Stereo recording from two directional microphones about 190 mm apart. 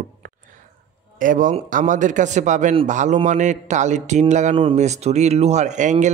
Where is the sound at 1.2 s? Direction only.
45° right (ahead or behind).